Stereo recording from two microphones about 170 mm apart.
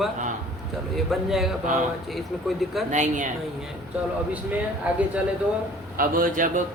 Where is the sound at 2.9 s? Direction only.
45° right (ahead or behind).